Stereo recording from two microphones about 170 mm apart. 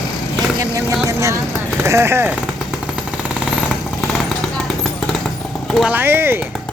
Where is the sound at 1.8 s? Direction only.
15° right (ahead or behind).